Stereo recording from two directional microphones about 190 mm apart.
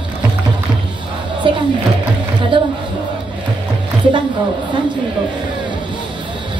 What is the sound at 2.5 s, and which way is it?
Music, 25° right (ahead or behind).